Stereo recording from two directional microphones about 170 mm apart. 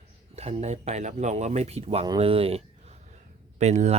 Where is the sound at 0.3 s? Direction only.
40° right (ahead or behind).